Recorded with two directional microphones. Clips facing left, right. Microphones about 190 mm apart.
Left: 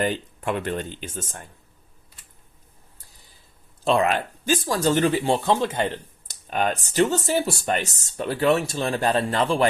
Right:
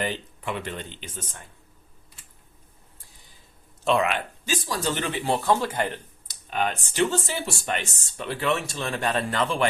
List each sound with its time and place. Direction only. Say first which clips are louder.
0.0 s speech: left 5 dB; 50° left (ahead or behind)
3.8 s speech: left 2 dB; 35° left (ahead or behind)
6.2 s speech: left 3 dB; 45° left (ahead or behind)